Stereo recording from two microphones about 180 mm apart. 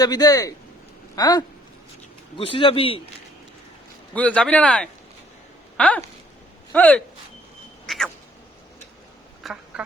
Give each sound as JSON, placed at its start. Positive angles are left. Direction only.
{"t": 0.0, "sound": "a man's voice", "side_deg": 20}
{"t": 4.1, "sound": "speech", "side_deg": 5}
{"t": 7.9, "sound": "a sound", "side_deg": 0}
{"t": 9.4, "sound": "duck", "side_deg": 0}